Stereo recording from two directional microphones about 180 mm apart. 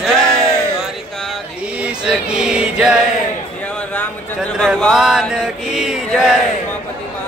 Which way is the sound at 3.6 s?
10° left (ahead or behind).